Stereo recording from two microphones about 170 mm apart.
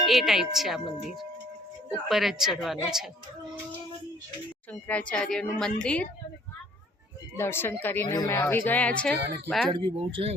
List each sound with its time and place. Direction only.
0.0 s speech: centre (ahead or behind)
4.7 s speech: 10° left (ahead or behind)
7.3 s speech: 15° left (ahead or behind)
9.7 s speech: 30° right (ahead or behind)